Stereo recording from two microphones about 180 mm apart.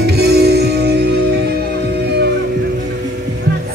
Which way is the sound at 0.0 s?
65° right (ahead or behind).